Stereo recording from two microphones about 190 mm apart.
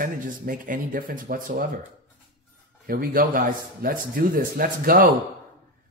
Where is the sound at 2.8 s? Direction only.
50° right (ahead or behind).